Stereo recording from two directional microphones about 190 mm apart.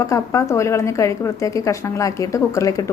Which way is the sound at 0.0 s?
15° left (ahead or behind).